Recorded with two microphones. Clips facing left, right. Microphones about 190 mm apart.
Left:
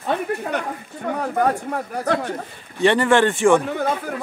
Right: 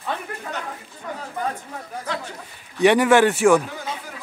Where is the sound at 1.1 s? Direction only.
65° left (ahead or behind).